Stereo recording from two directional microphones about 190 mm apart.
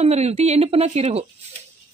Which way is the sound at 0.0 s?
35° right (ahead or behind).